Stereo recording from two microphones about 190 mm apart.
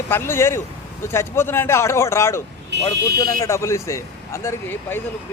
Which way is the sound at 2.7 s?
65° right (ahead or behind).